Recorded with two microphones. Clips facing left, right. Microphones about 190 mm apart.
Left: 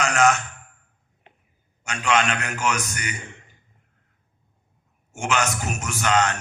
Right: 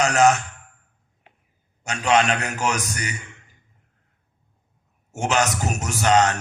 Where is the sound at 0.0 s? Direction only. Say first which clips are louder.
Right 3 dB; 35° right (ahead or behind).